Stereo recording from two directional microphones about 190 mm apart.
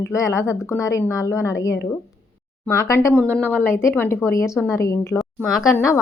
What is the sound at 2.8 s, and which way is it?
Speech, 15° left (ahead or behind).